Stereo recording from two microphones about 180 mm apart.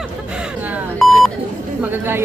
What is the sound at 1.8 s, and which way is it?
Speech, 10° right (ahead or behind).